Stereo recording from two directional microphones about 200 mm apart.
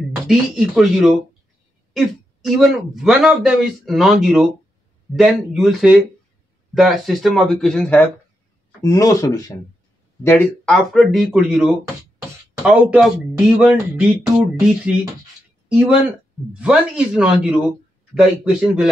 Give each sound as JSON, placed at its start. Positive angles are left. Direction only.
{"t": 0.3, "sound": "speech", "side_deg": 0}
{"t": 8.8, "sound": "speech", "side_deg": 15}
{"t": 15.7, "sound": "speech", "side_deg": -5}